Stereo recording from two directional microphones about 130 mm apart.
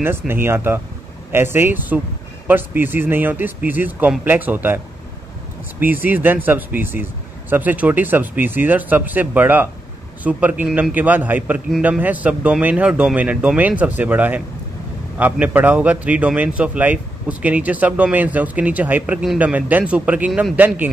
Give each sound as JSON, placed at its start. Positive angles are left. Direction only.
{"t": 0.3, "sound": "a man's voice", "side_deg": -15}